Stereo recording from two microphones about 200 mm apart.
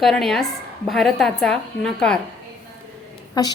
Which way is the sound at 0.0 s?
Centre (ahead or behind).